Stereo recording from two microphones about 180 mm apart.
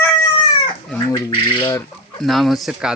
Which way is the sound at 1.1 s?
25° left (ahead or behind).